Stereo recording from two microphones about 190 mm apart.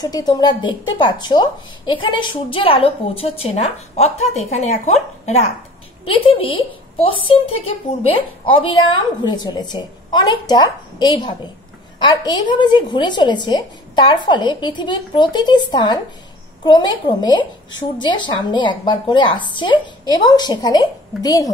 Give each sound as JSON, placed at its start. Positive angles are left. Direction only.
{"t": 0.0, "sound": "a woman's voice", "side_deg": 20}